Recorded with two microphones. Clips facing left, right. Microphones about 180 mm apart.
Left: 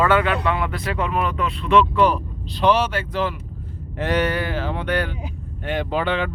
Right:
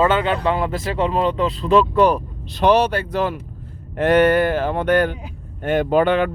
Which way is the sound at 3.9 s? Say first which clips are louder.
Right 7 dB; 55° right (ahead or behind).